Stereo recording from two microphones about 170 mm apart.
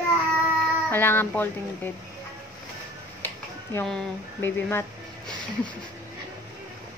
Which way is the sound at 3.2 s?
15° left (ahead or behind).